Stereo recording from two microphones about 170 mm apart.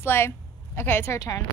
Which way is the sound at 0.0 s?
15° left (ahead or behind).